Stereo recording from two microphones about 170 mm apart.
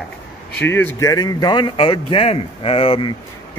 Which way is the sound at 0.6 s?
10° left (ahead or behind).